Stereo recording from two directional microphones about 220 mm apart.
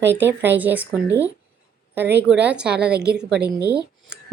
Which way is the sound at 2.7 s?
45° right (ahead or behind).